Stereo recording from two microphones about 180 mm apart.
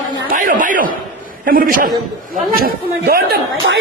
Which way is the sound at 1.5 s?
50° right (ahead or behind).